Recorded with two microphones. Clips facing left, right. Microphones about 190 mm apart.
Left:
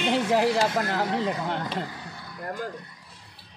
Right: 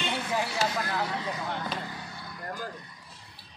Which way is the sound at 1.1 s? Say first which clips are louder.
Left 6 dB; 75° left (ahead or behind).